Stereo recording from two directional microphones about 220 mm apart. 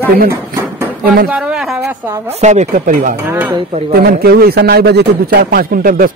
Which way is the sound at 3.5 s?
25° right (ahead or behind).